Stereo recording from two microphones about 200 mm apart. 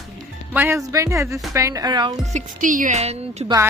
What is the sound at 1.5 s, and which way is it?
Speech, 15° right (ahead or behind).